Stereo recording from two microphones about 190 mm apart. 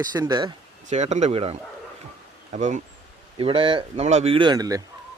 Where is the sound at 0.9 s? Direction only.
40° right (ahead or behind); by 4.8 s 20° right (ahead or behind).